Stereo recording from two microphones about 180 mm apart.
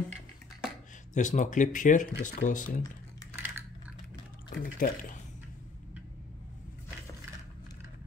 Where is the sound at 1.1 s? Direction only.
45° left (ahead or behind).